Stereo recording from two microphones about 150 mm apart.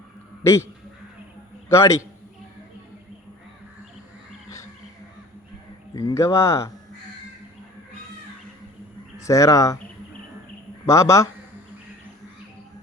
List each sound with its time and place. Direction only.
0.4 s speech: 20° left (ahead or behind)
1.7 s speech: 20° left (ahead or behind)
5.9 s speech: 25° left (ahead or behind)
9.2 s speech: 20° left (ahead or behind)
10.8 s speech: 20° left (ahead or behind)